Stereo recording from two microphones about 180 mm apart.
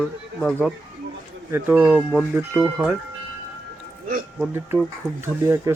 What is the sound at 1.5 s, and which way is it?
Speech, 10° right (ahead or behind).